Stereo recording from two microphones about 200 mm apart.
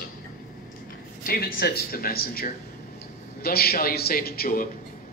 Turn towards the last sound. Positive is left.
turn(degrees=50)  # may be behind; listen again after turning